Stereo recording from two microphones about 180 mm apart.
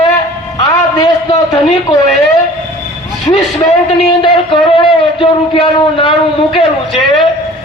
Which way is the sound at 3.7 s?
35° left (ahead or behind).